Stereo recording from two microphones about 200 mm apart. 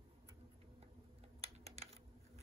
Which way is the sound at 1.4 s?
30° right (ahead or behind).